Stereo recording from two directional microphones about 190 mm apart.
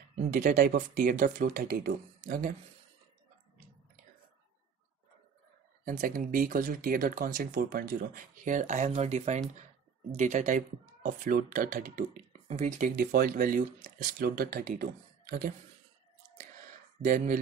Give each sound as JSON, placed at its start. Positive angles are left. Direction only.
{"t": 0.3, "sound": "speech", "side_deg": -40}
{"t": 2.2, "sound": "speech", "side_deg": -45}
{"t": 5.9, "sound": "speech", "side_deg": -50}
{"t": 17.0, "sound": "speech", "side_deg": -45}